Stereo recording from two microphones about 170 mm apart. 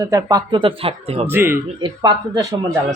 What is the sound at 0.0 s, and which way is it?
Speech, 20° right (ahead or behind).